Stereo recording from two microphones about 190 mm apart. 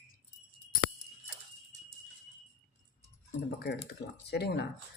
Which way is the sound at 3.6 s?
60° left (ahead or behind).